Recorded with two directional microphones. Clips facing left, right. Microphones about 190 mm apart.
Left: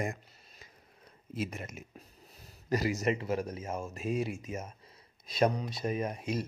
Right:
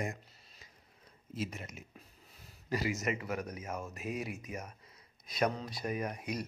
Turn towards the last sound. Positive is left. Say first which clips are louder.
# left 4 dB
turn(degrees=25)  # may be behind; listen again after turning